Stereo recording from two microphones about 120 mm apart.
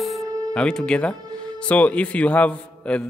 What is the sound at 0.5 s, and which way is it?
A man's voice, 5° left (ahead or behind).